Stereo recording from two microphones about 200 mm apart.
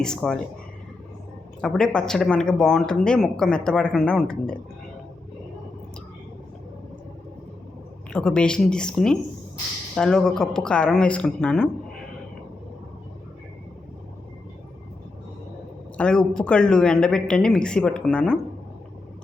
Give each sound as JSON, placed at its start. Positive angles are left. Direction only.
{"t": 0.0, "sound": "speech", "side_deg": 5}
{"t": 1.6, "sound": "speech", "side_deg": 5}
{"t": 8.1, "sound": "speech", "side_deg": 5}
{"t": 16.0, "sound": "speech", "side_deg": 5}